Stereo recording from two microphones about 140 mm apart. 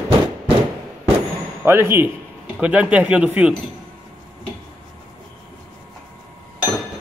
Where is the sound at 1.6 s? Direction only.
15° right (ahead or behind).